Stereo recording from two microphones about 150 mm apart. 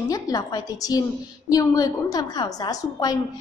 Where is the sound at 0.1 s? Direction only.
25° left (ahead or behind).